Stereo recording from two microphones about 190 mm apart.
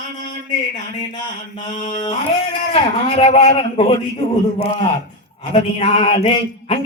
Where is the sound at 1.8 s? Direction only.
30° left (ahead or behind).